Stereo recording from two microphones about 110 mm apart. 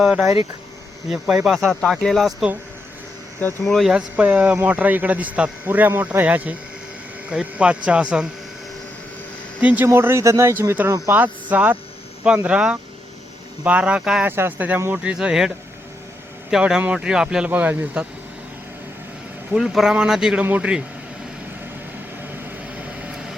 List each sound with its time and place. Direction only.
0.0 s speech: 5° right (ahead or behind)
1.5 s speech: 5° left (ahead or behind)
3.6 s speech: centre (ahead or behind)
3.9 s a man's voice: 15° right (ahead or behind)
9.6 s speech: 15° right (ahead or behind)
11.1 s a man's voice: 15° right (ahead or behind)
14.3 s a man's voice: 20° right (ahead or behind)
19.5 s a man's voice: centre (ahead or behind)
22.2 s vehicle: 15° right (ahead or behind)